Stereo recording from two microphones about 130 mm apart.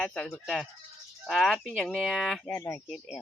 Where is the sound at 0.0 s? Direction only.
5° left (ahead or behind).